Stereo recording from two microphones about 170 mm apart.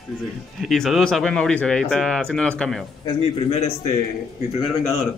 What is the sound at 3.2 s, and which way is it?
Speech, 35° left (ahead or behind).